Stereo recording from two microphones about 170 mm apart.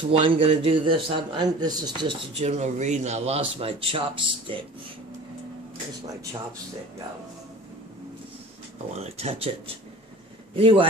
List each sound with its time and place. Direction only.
0.1 s a man's voice: 30° right (ahead or behind)
2.4 s speech: 40° right (ahead or behind)
9.0 s speech: 40° right (ahead or behind)